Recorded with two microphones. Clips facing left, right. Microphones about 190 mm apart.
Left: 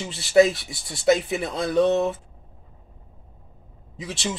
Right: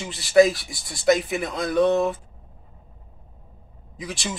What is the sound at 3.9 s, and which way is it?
Speech, 25° left (ahead or behind).